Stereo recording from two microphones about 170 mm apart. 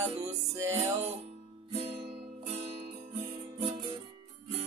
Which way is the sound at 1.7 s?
30° right (ahead or behind).